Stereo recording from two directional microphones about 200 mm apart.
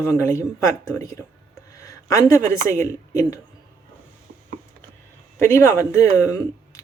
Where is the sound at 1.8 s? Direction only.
15° left (ahead or behind).